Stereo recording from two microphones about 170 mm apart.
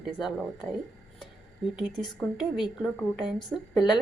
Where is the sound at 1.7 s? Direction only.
5° right (ahead or behind).